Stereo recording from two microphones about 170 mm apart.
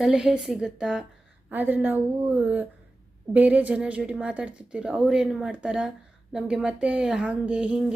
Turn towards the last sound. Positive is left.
turn(degrees=-5)  # may be behind; listen again after turning